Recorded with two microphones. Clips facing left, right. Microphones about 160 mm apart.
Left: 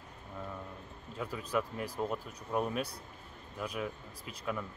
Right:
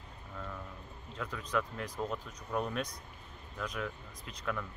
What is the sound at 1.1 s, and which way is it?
Speech, 10° left (ahead or behind).